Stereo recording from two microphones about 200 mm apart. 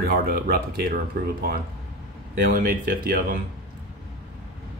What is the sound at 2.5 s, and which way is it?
Speech, 45° right (ahead or behind).